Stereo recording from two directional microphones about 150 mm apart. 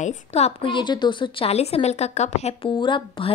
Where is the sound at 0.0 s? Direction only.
45° left (ahead or behind).